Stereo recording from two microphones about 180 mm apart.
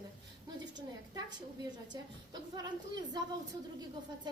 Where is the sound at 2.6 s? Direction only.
25° right (ahead or behind).